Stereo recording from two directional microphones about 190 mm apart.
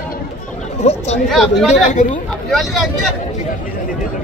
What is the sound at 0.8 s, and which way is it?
Speech, 35° left (ahead or behind).